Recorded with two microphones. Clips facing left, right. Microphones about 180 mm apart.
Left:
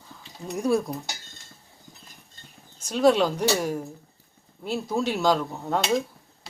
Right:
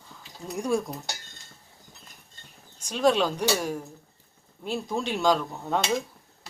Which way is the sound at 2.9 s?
10° left (ahead or behind).